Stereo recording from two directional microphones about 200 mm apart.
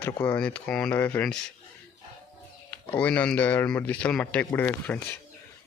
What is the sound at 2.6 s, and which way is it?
Speech, 10° left (ahead or behind).